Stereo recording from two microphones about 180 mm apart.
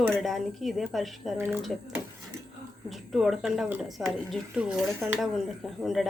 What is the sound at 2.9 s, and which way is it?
Speech, centre (ahead or behind).